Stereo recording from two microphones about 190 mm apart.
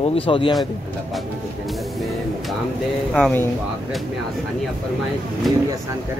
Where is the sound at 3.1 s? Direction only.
5° left (ahead or behind).